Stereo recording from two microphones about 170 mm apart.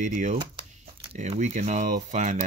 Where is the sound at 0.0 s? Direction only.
45° right (ahead or behind).